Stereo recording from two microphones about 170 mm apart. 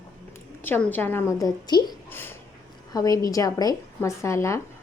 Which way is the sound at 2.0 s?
10° left (ahead or behind).